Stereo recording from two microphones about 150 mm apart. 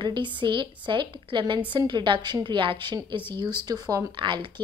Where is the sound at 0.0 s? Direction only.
30° right (ahead or behind).